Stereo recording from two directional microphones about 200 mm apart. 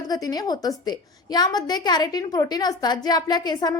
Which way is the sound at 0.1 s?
20° left (ahead or behind).